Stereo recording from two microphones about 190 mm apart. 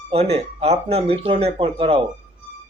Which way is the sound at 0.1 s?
30° right (ahead or behind).